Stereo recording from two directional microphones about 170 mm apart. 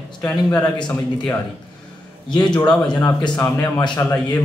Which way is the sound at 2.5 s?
10° left (ahead or behind).